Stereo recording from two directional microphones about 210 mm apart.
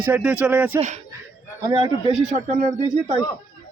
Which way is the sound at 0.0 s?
5° right (ahead or behind).